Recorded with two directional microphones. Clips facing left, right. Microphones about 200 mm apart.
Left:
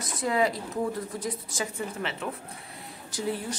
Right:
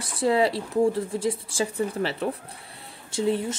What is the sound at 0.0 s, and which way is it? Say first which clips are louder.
A woman's voice: right 4 dB; 30° right (ahead or behind).